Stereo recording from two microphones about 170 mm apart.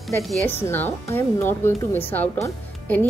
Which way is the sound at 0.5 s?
10° left (ahead or behind).